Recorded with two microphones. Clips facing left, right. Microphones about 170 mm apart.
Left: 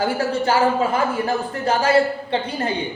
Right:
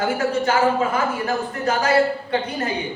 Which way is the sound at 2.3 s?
30° left (ahead or behind).